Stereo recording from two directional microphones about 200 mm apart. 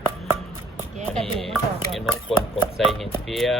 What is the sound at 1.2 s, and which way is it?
Speech, centre (ahead or behind).